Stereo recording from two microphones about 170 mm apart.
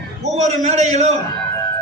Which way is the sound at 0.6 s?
45° right (ahead or behind).